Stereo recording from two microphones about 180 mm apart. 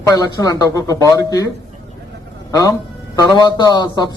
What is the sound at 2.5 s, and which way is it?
A man's voice, 20° left (ahead or behind).